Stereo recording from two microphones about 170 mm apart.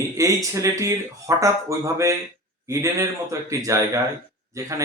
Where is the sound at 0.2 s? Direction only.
20° right (ahead or behind).